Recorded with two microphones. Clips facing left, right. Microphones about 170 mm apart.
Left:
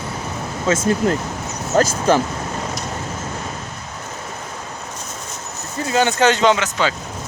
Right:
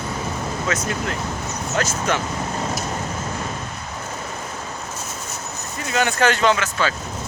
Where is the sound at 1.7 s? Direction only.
35° left (ahead or behind).